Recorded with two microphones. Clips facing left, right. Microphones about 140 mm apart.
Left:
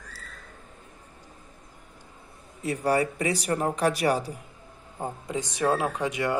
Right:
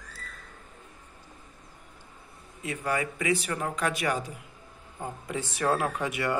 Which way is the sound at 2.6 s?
35° left (ahead or behind).